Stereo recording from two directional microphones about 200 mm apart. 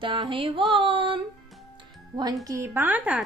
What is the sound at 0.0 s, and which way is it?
Music, 25° right (ahead or behind).